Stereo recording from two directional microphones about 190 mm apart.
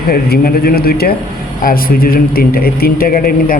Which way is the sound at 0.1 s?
50° left (ahead or behind).